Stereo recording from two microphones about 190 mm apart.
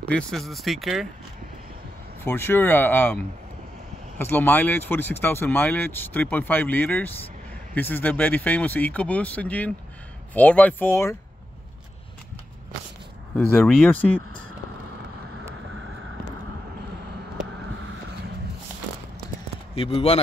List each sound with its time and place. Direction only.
0.1 s speech: centre (ahead or behind)
2.2 s speech: 10° left (ahead or behind)
4.2 s speech: 10° left (ahead or behind)
13.4 s speech: 5° left (ahead or behind)
19.7 s a man's voice: 30° left (ahead or behind)